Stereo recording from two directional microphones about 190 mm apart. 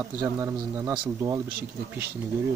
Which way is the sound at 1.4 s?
50° right (ahead or behind).